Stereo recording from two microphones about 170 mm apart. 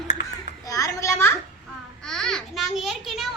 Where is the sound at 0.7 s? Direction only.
20° left (ahead or behind).